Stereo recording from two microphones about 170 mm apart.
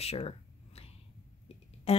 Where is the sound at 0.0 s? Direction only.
35° left (ahead or behind).